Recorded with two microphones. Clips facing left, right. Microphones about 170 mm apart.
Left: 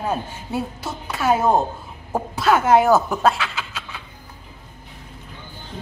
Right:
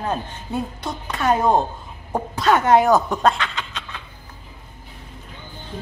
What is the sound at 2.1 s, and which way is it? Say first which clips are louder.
Chuckle: even; 5° left (ahead or behind).